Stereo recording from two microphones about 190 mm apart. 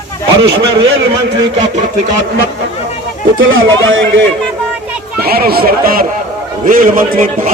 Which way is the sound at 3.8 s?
90° right.